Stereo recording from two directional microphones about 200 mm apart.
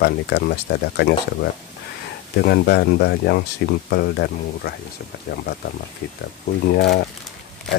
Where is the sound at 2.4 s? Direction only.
55° left (ahead or behind).